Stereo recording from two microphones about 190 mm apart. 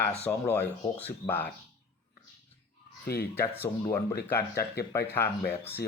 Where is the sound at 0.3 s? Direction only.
10° left (ahead or behind).